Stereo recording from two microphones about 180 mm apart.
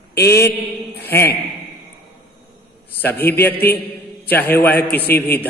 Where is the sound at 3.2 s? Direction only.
10° left (ahead or behind).